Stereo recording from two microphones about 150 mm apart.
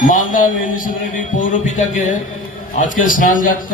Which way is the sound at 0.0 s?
65° left (ahead or behind).